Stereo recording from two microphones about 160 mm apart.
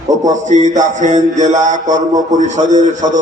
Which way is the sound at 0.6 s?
50° right (ahead or behind).